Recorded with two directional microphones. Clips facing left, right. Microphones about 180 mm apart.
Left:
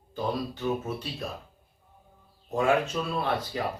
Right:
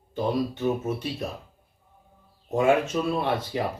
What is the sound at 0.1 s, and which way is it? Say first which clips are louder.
Speech: right 5 dB; 25° right (ahead or behind).